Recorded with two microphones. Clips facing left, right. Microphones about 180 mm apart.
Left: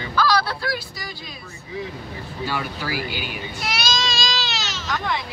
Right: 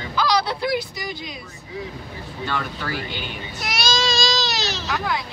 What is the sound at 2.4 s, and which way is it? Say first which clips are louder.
Speech: even; 5° left (ahead or behind).